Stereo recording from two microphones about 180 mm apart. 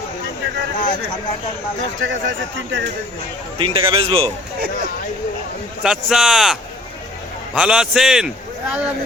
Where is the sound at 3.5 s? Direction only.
30° right (ahead or behind).